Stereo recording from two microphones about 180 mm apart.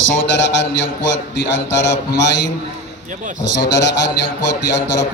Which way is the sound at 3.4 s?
70° left (ahead or behind).